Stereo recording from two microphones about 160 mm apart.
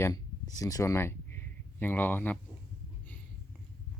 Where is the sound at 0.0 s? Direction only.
20° left (ahead or behind).